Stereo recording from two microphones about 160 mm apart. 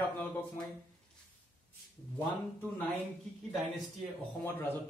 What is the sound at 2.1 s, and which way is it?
Speech, 10° left (ahead or behind).